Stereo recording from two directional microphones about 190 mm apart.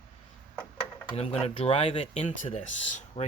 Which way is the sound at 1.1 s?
30° left (ahead or behind).